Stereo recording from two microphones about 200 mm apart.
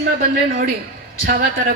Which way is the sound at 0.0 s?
45° right (ahead or behind).